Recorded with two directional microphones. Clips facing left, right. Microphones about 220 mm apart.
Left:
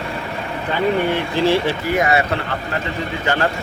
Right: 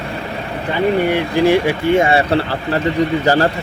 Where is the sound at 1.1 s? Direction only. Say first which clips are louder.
Right 4 dB; 15° right (ahead or behind).